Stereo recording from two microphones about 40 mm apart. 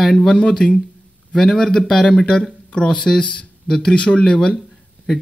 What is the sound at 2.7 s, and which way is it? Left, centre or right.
Speech, centre.